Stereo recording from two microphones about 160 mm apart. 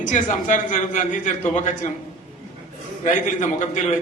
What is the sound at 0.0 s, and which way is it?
A man's voice, 50° left (ahead or behind).